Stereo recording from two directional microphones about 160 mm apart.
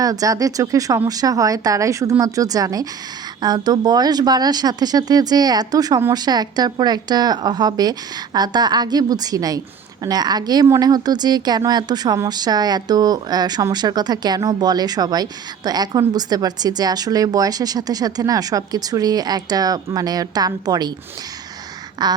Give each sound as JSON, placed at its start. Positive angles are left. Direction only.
{"t": 0.0, "sound": "speech", "side_deg": -20}
{"t": 22.0, "sound": "speech", "side_deg": -25}